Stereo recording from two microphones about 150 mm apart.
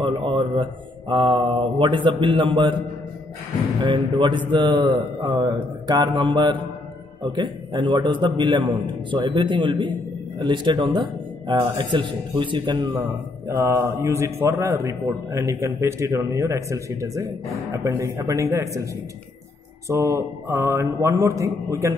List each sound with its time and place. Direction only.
0.0 s a man's voice: 35° right (ahead or behind)
3.8 s a man's voice: 30° right (ahead or behind)
13.5 s a man's voice: 15° right (ahead or behind)
19.9 s a man's voice: 20° right (ahead or behind)